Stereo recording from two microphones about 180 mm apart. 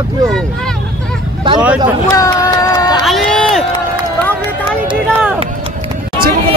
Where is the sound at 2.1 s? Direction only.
20° left (ahead or behind).